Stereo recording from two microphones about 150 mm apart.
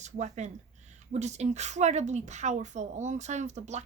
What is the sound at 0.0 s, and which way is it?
Speech, 50° right (ahead or behind).